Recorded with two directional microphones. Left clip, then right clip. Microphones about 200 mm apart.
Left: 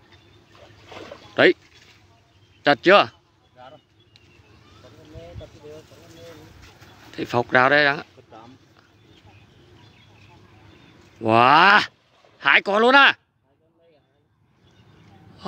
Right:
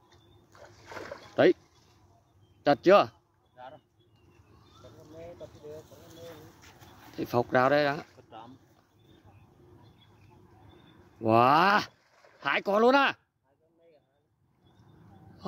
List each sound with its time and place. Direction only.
0.9 s boat: 5° right (ahead or behind)
2.6 s speech: 5° right (ahead or behind)
3.5 s bee: 40° left (ahead or behind)
7.2 s speech: 5° right (ahead or behind)
11.1 s speech: 5° right (ahead or behind)